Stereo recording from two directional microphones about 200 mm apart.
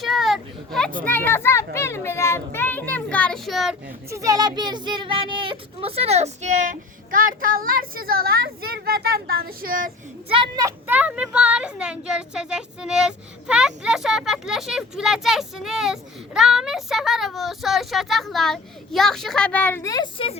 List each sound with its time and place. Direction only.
0.0 s a sound: centre (ahead or behind)
1.0 s a child's voice: 10° left (ahead or behind)
4.1 s speech: 15° right (ahead or behind); by 9.9 s 45° right (ahead or behind)
10.2 s speech: 25° right (ahead or behind); by 20.4 s 30° left (ahead or behind)